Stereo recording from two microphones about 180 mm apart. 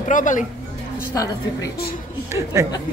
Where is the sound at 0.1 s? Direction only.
45° left (ahead or behind).